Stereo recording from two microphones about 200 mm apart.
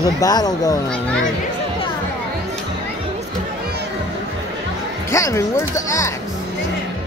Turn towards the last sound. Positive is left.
turn(degrees=15)  # may be behind; listen again after turning